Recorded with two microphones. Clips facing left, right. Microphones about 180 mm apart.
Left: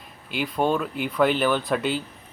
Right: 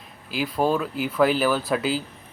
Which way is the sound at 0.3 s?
Centre (ahead or behind).